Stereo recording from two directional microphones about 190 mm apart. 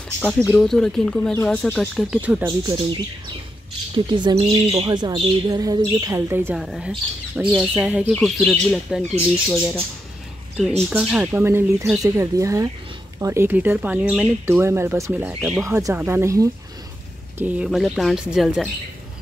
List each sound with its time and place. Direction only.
0.2 s speech: 10° left (ahead or behind); by 2.4 s 5° right (ahead or behind)
2.4 s speech: 25° right (ahead or behind)
6.6 s speech: centre (ahead or behind)
10.9 s speech: 5° right (ahead or behind)